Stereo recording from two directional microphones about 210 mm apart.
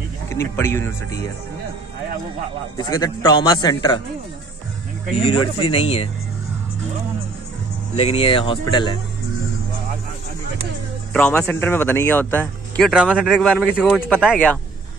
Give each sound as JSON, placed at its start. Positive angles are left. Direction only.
{"t": 0.3, "sound": "speech", "side_deg": 10}
{"t": 2.8, "sound": "a man's voice", "side_deg": 20}
{"t": 5.2, "sound": "a man's voice", "side_deg": 25}
{"t": 7.9, "sound": "a man's voice", "side_deg": 25}
{"t": 11.1, "sound": "speech", "side_deg": 5}